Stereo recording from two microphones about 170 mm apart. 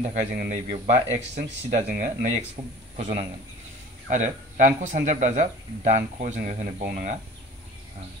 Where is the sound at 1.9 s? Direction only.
50° right (ahead or behind).